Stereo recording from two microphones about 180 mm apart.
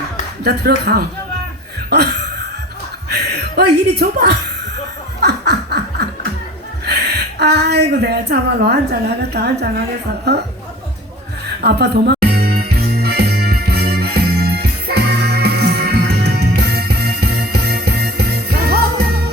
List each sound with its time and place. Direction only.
0.4 s a woman's voice: 65° right (ahead or behind)
1.9 s a sound: 65° right (ahead or behind)
3.1 s music: 65° right (ahead or behind)
4.0 s speech: 50° right (ahead or behind)
5.2 s snicker: 65° right (ahead or behind)
6.8 s a woman's voice: 65° right (ahead or behind)
11.6 s music: 65° right (ahead or behind)